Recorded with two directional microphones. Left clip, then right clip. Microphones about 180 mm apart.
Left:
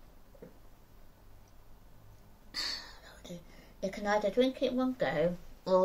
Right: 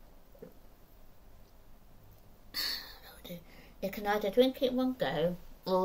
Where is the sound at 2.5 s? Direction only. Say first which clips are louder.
Right 1 dB; 15° right (ahead or behind).